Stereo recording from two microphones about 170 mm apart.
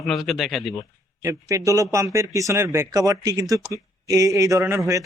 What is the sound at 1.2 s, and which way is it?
A man's voice, 20° right (ahead or behind).